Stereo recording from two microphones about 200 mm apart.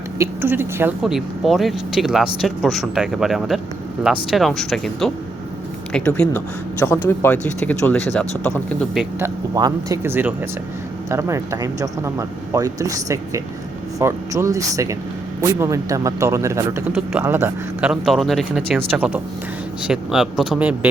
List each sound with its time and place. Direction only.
0.2 s speech: 10° right (ahead or behind); by 9.0 s 5° left (ahead or behind)
9.1 s speech: 15° right (ahead or behind)